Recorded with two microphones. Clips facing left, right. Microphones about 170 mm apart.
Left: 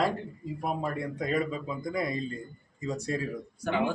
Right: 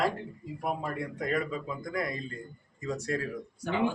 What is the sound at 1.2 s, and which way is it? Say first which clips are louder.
Speech: left 1 dB; 20° left (ahead or behind).